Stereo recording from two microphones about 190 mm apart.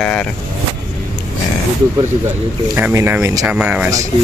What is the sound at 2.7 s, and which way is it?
Speech, 15° right (ahead or behind).